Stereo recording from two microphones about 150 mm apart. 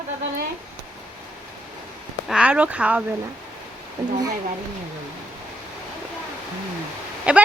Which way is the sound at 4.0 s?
25° right (ahead or behind).